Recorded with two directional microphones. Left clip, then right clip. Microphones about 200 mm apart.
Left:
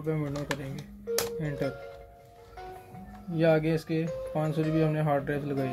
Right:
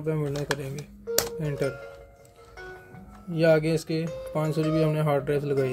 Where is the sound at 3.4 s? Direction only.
45° right (ahead or behind).